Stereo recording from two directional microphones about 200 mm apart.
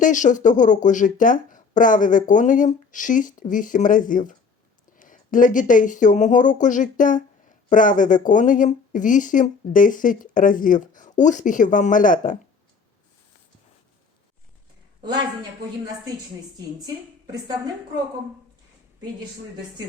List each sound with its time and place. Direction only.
0.0 s speech: 40° left (ahead or behind)